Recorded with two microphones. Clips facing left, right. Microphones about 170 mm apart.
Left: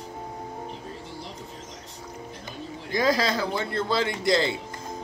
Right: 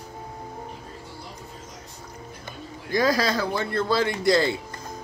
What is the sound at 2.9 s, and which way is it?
A man's voice, 20° left (ahead or behind).